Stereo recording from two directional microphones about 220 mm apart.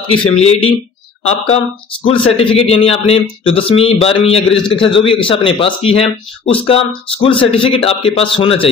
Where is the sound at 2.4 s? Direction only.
25° left (ahead or behind).